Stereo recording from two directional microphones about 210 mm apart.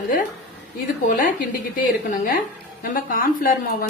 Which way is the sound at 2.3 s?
40° left (ahead or behind).